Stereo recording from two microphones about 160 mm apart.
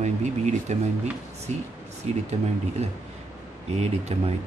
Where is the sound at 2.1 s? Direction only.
45° right (ahead or behind).